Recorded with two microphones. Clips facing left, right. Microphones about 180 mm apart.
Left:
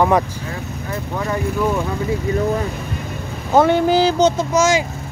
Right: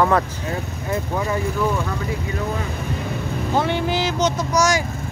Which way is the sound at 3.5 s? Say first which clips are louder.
Left 8 dB; 45° left (ahead or behind).